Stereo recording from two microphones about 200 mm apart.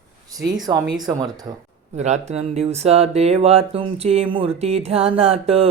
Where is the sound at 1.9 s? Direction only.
35° right (ahead or behind).